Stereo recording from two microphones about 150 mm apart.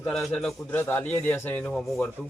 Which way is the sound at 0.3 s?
10° left (ahead or behind).